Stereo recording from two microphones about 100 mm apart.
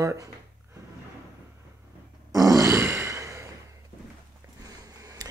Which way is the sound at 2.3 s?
35° right (ahead or behind).